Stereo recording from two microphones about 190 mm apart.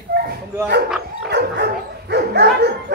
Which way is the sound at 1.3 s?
60° right (ahead or behind).